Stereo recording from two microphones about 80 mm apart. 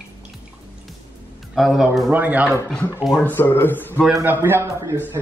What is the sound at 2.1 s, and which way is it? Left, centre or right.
Speech, right.